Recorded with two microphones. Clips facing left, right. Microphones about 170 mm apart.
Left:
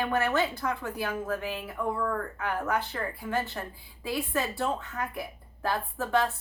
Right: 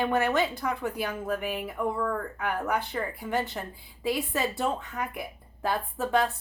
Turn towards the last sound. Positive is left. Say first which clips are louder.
# right 1 dB
turn(degrees=-15)  # may be behind; listen again after turning